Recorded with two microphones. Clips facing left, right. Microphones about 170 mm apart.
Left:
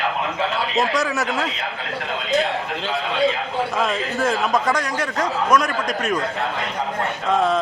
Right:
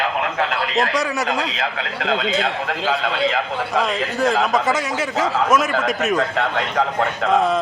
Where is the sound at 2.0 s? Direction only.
75° right (ahead or behind).